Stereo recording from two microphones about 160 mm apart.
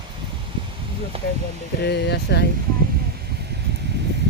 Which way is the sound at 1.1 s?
40° right (ahead or behind).